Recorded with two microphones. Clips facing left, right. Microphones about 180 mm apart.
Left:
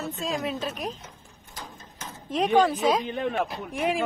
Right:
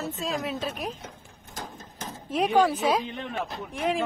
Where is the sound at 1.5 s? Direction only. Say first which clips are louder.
Right 3 dB; 45° right (ahead or behind).